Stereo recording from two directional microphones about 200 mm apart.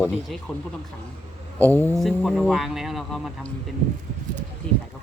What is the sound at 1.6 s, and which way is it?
A man's voice, 10° left (ahead or behind).